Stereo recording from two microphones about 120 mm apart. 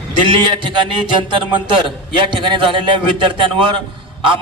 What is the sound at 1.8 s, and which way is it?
A man's voice, 45° right (ahead or behind).